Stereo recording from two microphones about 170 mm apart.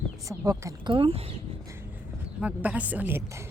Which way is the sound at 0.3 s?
20° right (ahead or behind).